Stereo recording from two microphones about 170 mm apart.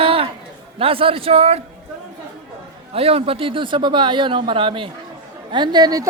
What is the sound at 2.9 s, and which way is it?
A man's voice, 35° right (ahead or behind).